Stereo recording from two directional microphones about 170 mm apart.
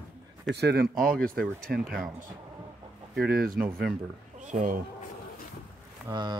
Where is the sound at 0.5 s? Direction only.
75° right (ahead or behind).